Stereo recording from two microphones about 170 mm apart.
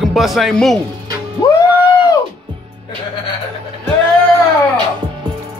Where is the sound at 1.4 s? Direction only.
20° left (ahead or behind).